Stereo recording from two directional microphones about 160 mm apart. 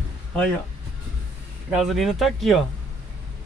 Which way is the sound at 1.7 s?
Centre (ahead or behind).